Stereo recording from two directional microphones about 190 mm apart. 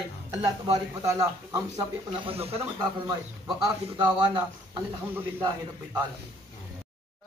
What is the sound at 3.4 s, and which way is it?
A man's voice, 5° right (ahead or behind).